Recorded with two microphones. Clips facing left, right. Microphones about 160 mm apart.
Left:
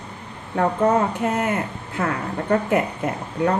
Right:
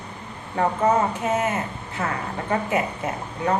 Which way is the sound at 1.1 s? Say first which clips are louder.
Left 1 dB; 60° left (ahead or behind).